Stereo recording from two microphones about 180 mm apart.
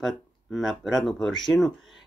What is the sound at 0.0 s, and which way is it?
Speech, centre (ahead or behind).